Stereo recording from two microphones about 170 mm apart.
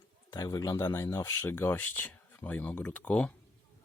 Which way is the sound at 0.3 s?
20° left (ahead or behind).